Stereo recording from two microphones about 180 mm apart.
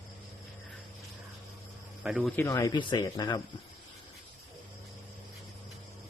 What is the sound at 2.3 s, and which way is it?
Speech, 15° left (ahead or behind).